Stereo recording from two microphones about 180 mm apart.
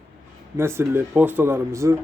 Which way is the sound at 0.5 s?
15° right (ahead or behind).